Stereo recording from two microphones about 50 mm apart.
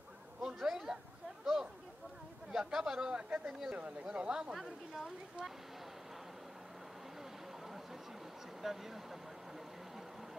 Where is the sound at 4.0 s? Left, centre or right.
Centre.